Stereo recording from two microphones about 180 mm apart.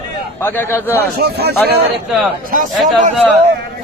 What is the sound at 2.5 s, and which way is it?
Speech, 45° right (ahead or behind).